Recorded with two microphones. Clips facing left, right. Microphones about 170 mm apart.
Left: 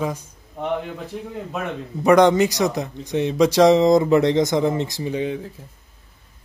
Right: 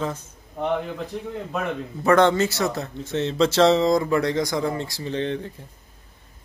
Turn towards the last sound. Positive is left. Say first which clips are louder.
# left 1 dB
turn(degrees=5)  # may be behind; listen again after turning